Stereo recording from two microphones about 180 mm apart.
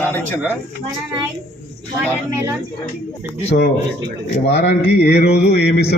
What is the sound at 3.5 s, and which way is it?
A man's voice, 60° left (ahead or behind).